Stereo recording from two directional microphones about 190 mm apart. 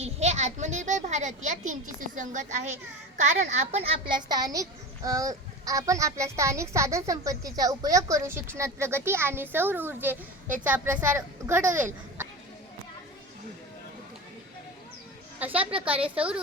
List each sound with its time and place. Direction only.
0.0 s a child's voice: 35° right (ahead or behind)
4.1 s a child's voice: 20° right (ahead or behind)
15.4 s a woman's voice: 10° right (ahead or behind)